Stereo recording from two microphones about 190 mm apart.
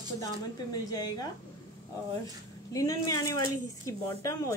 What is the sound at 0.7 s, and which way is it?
Speech, 20° left (ahead or behind).